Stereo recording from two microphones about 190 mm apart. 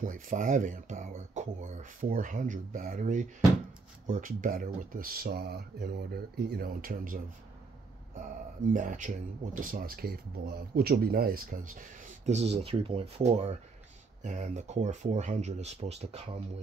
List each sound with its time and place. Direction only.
0.0 s speech: 45° right (ahead or behind)
8.7 s speech: 40° right (ahead or behind)